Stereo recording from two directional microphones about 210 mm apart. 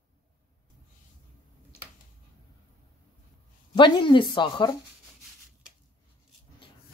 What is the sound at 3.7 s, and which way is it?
Speech, 20° left (ahead or behind).